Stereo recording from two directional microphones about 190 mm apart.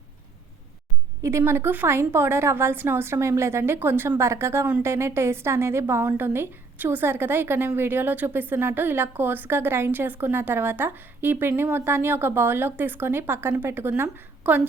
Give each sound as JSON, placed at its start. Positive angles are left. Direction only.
{"t": 1.2, "sound": "a woman's voice", "side_deg": -15}